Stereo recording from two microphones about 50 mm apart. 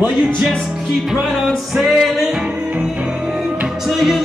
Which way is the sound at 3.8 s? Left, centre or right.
Centre.